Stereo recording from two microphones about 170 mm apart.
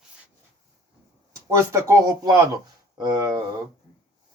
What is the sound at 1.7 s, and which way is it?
Speech, 15° right (ahead or behind).